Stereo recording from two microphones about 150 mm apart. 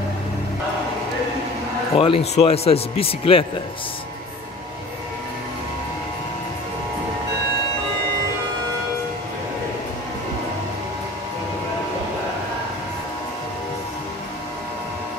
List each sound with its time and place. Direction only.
2.0 s a man's voice: 40° left (ahead or behind)